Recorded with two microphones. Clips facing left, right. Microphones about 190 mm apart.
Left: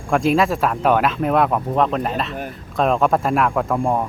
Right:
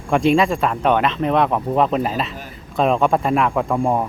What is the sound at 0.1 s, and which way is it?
Speech, centre (ahead or behind).